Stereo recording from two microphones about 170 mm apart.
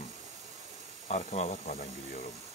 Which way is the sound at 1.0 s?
45° left (ahead or behind).